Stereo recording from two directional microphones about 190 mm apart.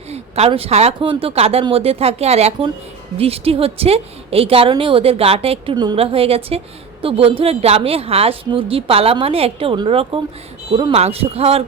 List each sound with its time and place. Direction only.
0.1 s a woman's voice: 35° right (ahead or behind)